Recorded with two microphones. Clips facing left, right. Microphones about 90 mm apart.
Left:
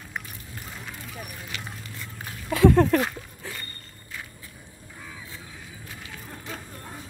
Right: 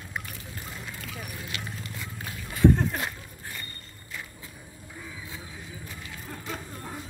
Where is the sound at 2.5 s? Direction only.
80° left.